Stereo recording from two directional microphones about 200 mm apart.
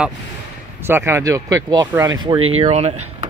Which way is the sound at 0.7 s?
10° right (ahead or behind).